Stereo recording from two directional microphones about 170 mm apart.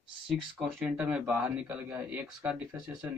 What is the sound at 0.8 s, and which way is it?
Speech, 10° right (ahead or behind).